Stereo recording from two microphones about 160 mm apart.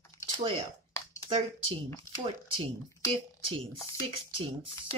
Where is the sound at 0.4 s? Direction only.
35° right (ahead or behind).